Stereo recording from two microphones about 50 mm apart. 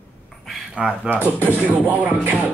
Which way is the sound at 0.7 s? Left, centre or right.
Centre.